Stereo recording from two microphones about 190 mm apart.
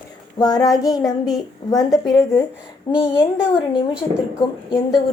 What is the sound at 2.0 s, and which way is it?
A woman's voice, centre (ahead or behind).